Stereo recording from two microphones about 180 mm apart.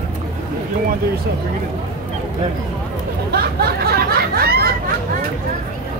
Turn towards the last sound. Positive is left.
turn(degrees=-60)  # may be behind; listen again after turning